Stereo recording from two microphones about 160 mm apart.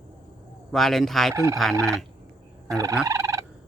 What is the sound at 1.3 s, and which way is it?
Fowl, 20° right (ahead or behind).